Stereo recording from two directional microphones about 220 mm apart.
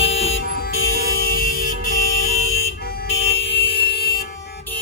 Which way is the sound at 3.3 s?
50° left (ahead or behind).